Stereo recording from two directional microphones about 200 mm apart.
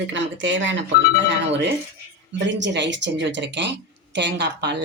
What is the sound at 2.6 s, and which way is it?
Speech, 60° right (ahead or behind).